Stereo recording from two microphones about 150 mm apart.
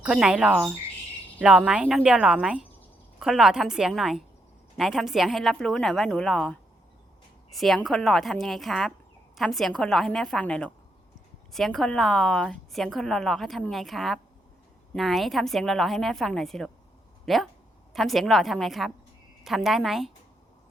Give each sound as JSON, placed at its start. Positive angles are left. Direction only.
{"t": 0.0, "sound": "a woman's voice", "side_deg": -5}